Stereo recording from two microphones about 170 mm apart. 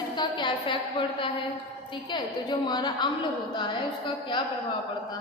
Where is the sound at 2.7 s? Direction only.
25° left (ahead or behind).